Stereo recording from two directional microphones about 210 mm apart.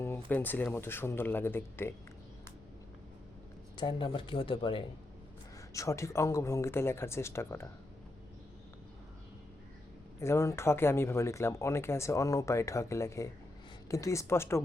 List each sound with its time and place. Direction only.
0.3 s speech: 10° left (ahead or behind)
3.8 s speech: 20° left (ahead or behind)
10.2 s speech: 15° left (ahead or behind)